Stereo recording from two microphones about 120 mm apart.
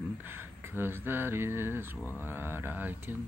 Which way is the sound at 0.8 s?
15° right (ahead or behind).